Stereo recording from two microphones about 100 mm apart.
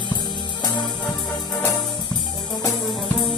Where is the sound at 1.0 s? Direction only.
10° left (ahead or behind).